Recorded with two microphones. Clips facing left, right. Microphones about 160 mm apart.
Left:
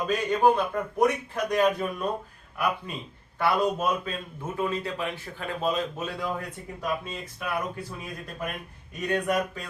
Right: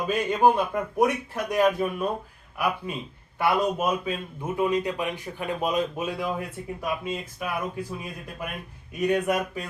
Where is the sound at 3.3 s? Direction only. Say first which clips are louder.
Right 1 dB; 10° right (ahead or behind).